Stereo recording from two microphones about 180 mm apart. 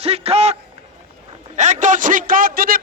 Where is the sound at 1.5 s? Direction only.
40° right (ahead or behind).